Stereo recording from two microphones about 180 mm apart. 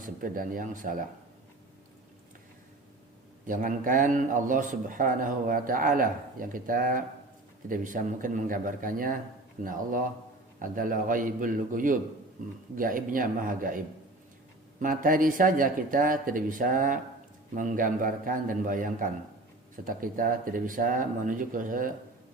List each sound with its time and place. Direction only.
0.0 s a man's voice: 50° right (ahead or behind)
3.4 s a man's voice: 45° right (ahead or behind)